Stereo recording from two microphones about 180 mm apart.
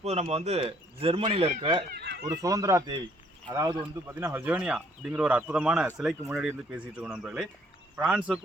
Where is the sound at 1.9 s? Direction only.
65° right (ahead or behind).